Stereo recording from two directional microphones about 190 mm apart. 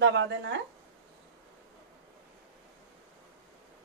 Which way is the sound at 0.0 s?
70° right (ahead or behind).